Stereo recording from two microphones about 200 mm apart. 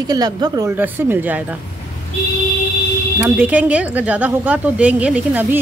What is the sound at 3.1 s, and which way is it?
Speech, 10° right (ahead or behind).